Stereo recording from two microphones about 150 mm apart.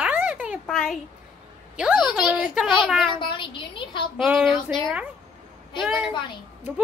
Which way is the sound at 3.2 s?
35° left (ahead or behind).